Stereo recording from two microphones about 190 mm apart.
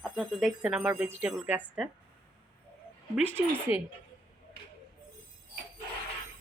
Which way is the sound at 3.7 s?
30° left (ahead or behind).